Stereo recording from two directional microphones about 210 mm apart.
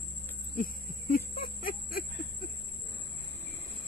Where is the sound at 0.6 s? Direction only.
45° left (ahead or behind).